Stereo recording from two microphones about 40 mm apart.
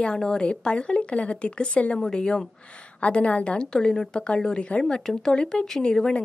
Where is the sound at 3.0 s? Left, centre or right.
Left.